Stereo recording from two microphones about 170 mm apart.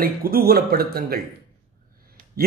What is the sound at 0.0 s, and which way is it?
A man's voice, 60° right (ahead or behind).